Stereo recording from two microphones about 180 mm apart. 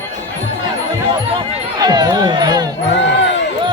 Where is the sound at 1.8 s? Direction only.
25° right (ahead or behind).